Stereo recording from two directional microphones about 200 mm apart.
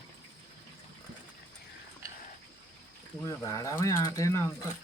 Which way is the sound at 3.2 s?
15° left (ahead or behind).